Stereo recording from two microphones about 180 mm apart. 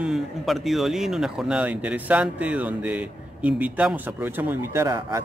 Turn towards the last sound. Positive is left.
turn(degrees=-25)  # may be behind; listen again after turning